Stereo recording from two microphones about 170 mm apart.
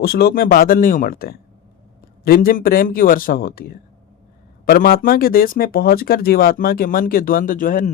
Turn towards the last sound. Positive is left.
turn(degrees=50)  # may be behind; listen again after turning